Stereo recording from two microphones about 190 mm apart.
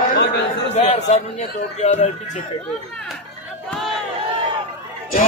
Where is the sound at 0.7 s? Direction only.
35° left (ahead or behind).